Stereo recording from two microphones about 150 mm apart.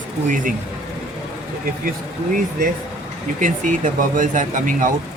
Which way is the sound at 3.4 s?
60° right (ahead or behind).